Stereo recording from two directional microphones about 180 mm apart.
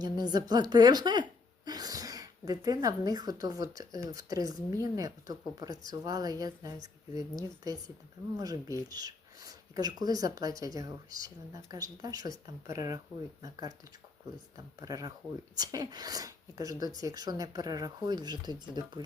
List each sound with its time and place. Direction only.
0.0 s a woman's voice: 20° right (ahead or behind)